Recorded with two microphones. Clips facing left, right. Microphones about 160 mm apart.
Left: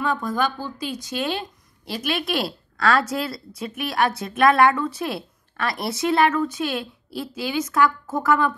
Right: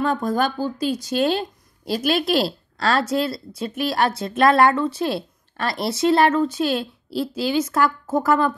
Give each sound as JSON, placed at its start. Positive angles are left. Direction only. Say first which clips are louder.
{"t": 0.0, "sound": "a woman's voice", "louder": "right 3 dB", "side_deg": -40}